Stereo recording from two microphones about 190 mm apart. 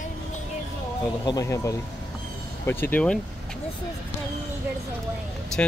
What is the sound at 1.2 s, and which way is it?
Speech, 20° left (ahead or behind).